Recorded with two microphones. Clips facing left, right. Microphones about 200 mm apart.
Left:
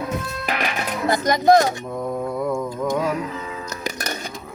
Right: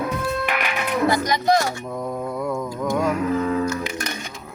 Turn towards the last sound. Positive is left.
turn(degrees=40)  # may be behind; listen again after turning